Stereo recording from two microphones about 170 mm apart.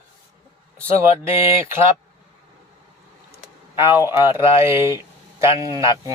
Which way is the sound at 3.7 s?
15° right (ahead or behind).